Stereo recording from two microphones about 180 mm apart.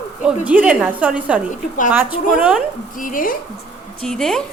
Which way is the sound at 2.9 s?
50° left (ahead or behind).